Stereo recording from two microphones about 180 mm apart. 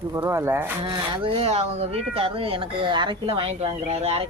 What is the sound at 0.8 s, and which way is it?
Speech, 30° right (ahead or behind).